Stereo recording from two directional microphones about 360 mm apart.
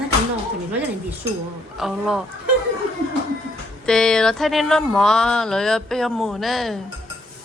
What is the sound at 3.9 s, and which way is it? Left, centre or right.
Speech, centre.